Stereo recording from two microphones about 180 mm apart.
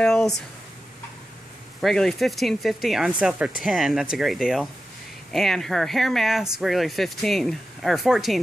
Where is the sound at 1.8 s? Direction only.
Centre (ahead or behind).